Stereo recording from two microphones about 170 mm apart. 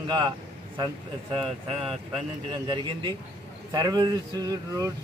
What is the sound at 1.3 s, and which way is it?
Speech, 30° right (ahead or behind).